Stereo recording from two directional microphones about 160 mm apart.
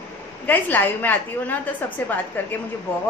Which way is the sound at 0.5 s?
10° left (ahead or behind).